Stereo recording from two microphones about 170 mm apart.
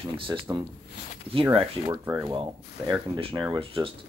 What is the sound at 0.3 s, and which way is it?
Speech, 25° right (ahead or behind).